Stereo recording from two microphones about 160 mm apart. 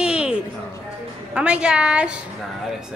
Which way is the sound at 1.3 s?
5° right (ahead or behind).